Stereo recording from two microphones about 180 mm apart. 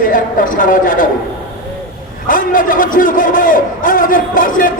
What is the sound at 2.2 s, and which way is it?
A man's voice, 50° left (ahead or behind).